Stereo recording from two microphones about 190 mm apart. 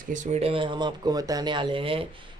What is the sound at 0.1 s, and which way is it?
Speech, 35° right (ahead or behind).